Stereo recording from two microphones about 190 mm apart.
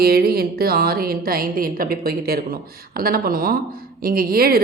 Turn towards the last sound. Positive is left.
turn(degrees=-50)  # may be behind; listen again after turning